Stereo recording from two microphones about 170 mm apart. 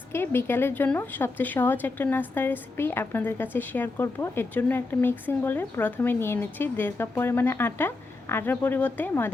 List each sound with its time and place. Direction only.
0.1 s a woman's voice: 15° left (ahead or behind)